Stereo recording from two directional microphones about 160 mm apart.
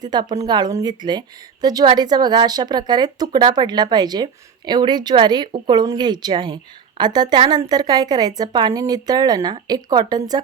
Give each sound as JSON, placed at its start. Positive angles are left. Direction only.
{"t": 0.0, "sound": "a woman's voice", "side_deg": -25}